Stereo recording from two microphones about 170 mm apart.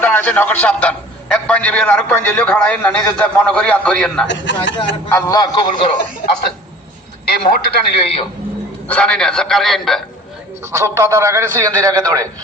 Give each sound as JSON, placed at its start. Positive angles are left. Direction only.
{"t": 0.0, "sound": "a man's voice", "side_deg": 10}
{"t": 4.3, "sound": "speech", "side_deg": 90}
{"t": 5.0, "sound": "a man's voice", "side_deg": 20}
{"t": 7.3, "sound": "a man's voice", "side_deg": 60}
{"t": 8.0, "sound": "a man's voice", "side_deg": 35}
{"t": 8.9, "sound": "a man's voice", "side_deg": 5}
{"t": 10.6, "sound": "a man's voice", "side_deg": -15}